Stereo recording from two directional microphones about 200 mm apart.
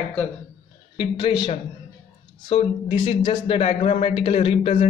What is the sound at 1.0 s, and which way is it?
Speech, 20° left (ahead or behind).